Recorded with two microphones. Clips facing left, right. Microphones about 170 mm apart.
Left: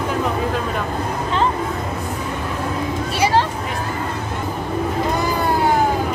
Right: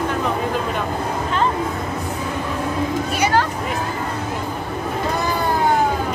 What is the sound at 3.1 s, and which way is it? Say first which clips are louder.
Vehicle: left 2 dB; 30° left (ahead or behind).